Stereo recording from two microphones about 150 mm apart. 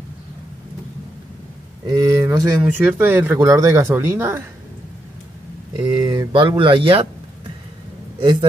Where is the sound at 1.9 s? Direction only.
20° right (ahead or behind).